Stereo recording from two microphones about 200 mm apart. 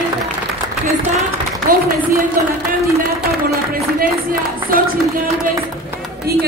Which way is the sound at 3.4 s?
45° right (ahead or behind).